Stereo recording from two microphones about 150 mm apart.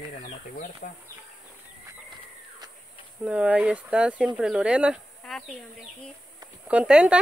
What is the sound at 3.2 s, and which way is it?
Speech, 10° right (ahead or behind).